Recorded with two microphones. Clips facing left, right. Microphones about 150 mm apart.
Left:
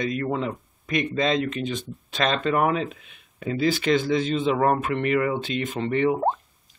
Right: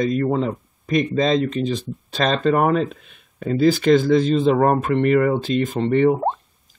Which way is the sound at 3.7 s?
45° right (ahead or behind).